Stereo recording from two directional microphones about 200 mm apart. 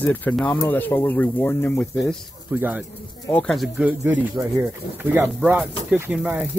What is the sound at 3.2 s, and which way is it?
Speech, 5° left (ahead or behind).